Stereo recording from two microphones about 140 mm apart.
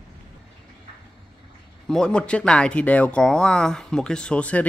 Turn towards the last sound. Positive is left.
turn(degrees=10)  # may be behind; listen again after turning